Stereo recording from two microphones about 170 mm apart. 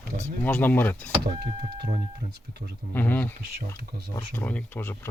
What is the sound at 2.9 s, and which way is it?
Speech, 10° left (ahead or behind).